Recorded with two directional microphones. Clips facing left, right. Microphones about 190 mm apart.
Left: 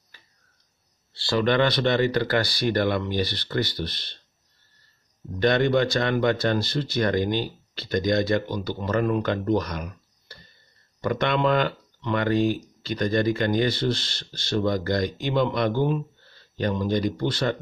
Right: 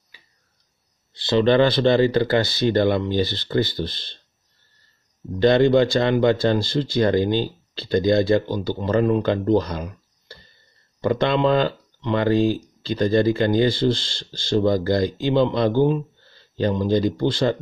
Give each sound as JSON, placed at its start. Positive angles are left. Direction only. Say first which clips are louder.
{"t": 1.1, "sound": "speech", "louder": "right 5 dB", "side_deg": -20}
{"t": 5.4, "sound": "speech", "louder": "right 5 dB", "side_deg": -30}